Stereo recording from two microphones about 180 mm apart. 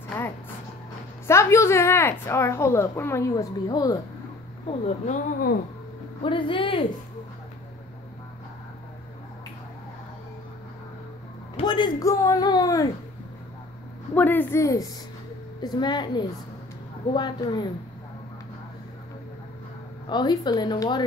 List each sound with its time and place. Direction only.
1.2 s a woman's voice: 15° left (ahead or behind)
4.6 s speech: 40° left (ahead or behind)
6.2 s a woman's voice: 25° left (ahead or behind)
11.5 s speech: 25° left (ahead or behind)
14.1 s a woman's voice: 10° left (ahead or behind)
20.1 s a woman's voice: 25° left (ahead or behind)